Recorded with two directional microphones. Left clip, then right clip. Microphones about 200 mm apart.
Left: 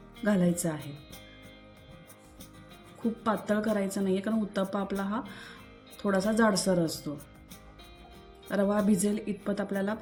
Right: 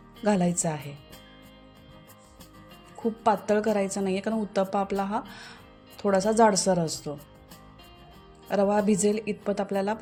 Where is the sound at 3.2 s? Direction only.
40° right (ahead or behind).